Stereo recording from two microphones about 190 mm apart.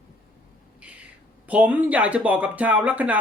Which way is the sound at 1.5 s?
10° right (ahead or behind).